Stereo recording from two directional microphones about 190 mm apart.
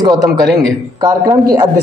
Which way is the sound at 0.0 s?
20° right (ahead or behind).